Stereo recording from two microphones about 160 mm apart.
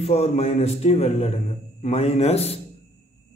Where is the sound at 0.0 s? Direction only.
40° left (ahead or behind).